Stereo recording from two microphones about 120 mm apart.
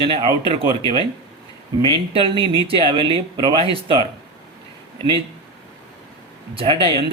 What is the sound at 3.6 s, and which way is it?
Speech, 50° right (ahead or behind).